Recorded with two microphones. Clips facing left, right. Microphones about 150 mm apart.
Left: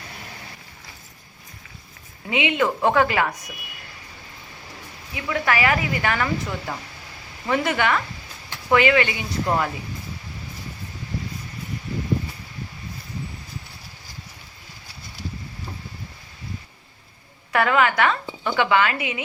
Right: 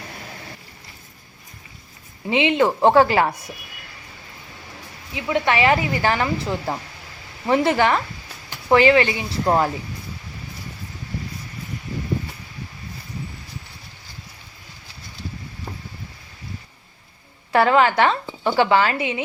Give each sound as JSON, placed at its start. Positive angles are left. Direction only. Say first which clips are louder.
{"t": 2.3, "sound": "a woman's voice", "louder": "right 4 dB", "side_deg": -30}
{"t": 5.1, "sound": "a woman's voice", "louder": "right 3 dB", "side_deg": -25}
{"t": 17.5, "sound": "a woman's voice", "louder": "right 4 dB", "side_deg": -30}